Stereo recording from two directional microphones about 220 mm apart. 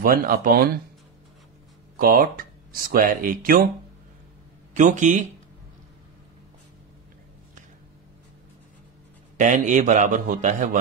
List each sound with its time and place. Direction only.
0.0 s a man's voice: 40° right (ahead or behind)
2.0 s speech: 40° right (ahead or behind)
4.7 s a man's voice: 35° right (ahead or behind)
9.4 s a man's voice: 35° right (ahead or behind)